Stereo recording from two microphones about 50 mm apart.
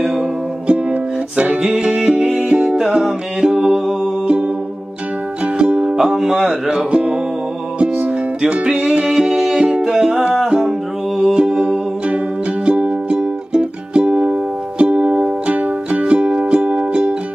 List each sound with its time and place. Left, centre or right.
0.7 s music: right
2.0 s music: centre
5.4 s music: right
5.9 s music: centre
11.3 s music: centre